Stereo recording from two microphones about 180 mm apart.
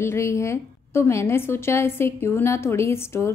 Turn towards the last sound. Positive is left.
turn(degrees=15)  # may be behind; listen again after turning